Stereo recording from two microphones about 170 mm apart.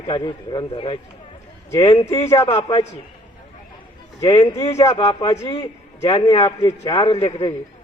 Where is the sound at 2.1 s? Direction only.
15° left (ahead or behind).